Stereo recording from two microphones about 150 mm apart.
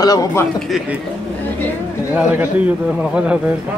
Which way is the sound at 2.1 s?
10° right (ahead or behind).